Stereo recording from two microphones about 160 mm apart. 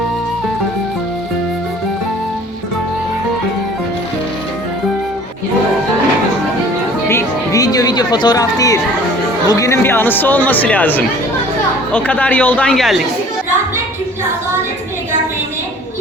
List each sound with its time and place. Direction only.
7.1 s music: 20° left (ahead or behind)
9.5 s speech: 20° left (ahead or behind); by 13.0 s centre (ahead or behind)